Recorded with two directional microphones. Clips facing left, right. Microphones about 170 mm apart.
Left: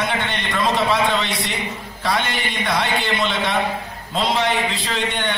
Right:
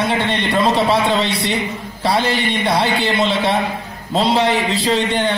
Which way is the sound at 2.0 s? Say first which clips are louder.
Right 5 dB; 30° right (ahead or behind).